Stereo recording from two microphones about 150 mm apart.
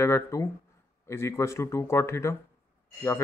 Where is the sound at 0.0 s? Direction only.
20° left (ahead or behind).